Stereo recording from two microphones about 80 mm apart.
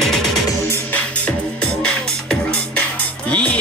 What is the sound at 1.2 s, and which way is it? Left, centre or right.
Music, centre.